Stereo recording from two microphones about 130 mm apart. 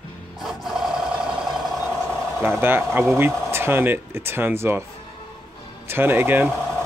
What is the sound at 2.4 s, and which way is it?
Speech, 15° right (ahead or behind).